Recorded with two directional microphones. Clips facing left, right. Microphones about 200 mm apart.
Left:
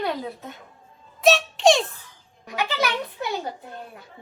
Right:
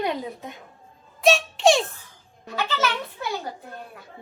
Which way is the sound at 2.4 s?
15° left (ahead or behind).